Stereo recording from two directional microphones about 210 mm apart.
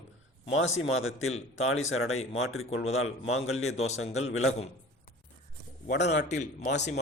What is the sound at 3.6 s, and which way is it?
Speech, 30° left (ahead or behind).